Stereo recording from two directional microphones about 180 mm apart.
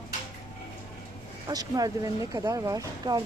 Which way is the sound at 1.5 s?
20° right (ahead or behind).